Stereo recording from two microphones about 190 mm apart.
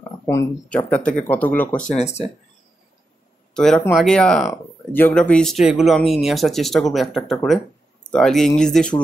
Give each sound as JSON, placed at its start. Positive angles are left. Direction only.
{"t": 0.3, "sound": "speech", "side_deg": 15}
{"t": 1.8, "sound": "speech", "side_deg": 40}
{"t": 3.5, "sound": "speech", "side_deg": 0}